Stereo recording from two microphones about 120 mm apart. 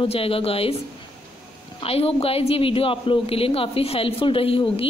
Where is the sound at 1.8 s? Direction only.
55° left (ahead or behind).